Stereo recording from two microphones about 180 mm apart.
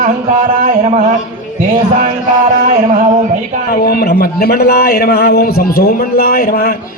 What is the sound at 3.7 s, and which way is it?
A man's voice, 55° left (ahead or behind).